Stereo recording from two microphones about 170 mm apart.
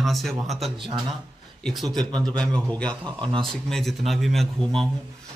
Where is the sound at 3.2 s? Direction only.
30° right (ahead or behind).